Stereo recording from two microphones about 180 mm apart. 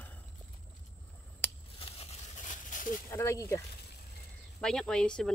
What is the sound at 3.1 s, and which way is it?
Speech, 15° left (ahead or behind).